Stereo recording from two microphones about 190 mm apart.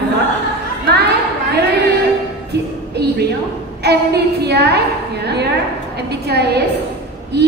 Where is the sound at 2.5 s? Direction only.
60° right (ahead or behind).